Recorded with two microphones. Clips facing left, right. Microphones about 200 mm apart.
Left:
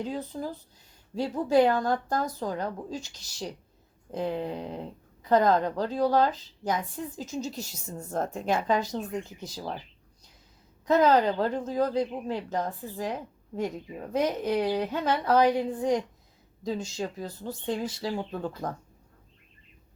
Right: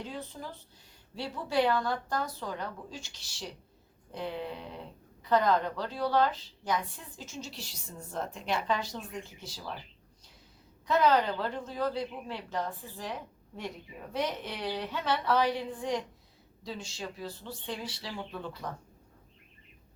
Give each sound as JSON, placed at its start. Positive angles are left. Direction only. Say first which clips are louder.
{"t": 0.0, "sound": "a woman's voice", "louder": "left 8 dB", "side_deg": 40}
{"t": 10.8, "sound": "a woman's voice", "louder": "left 4 dB", "side_deg": 45}